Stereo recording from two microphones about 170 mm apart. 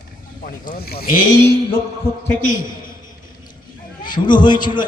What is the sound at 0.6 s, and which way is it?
Speech, 60° left (ahead or behind).